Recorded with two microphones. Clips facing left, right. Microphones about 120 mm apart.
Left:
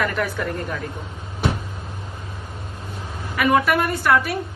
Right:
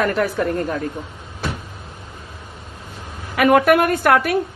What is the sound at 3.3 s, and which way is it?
A woman's voice, 65° right (ahead or behind).